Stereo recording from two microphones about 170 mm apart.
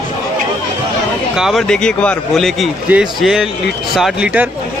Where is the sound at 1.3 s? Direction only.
Centre (ahead or behind).